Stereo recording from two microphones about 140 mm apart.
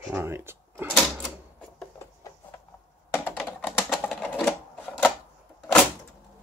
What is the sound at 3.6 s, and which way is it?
Typing, 15° left (ahead or behind).